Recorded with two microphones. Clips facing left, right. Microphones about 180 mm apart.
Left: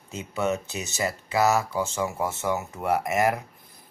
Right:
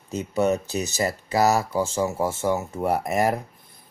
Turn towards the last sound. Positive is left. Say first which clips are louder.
# right 1 dB
turn(degrees=-35)  # may be behind; listen again after turning